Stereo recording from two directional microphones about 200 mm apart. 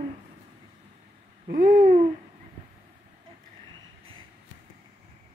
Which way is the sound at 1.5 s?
40° right (ahead or behind).